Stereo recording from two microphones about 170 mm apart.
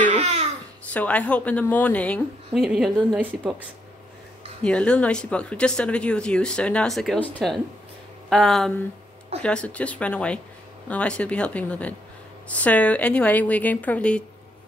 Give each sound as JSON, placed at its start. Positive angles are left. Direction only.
{"t": 0.0, "sound": "babbling", "side_deg": -45}
{"t": 0.9, "sound": "a woman's voice", "side_deg": 10}
{"t": 4.6, "sound": "a woman's voice", "side_deg": 5}